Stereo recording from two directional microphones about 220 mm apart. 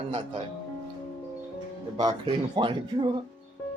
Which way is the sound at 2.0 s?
20° right (ahead or behind).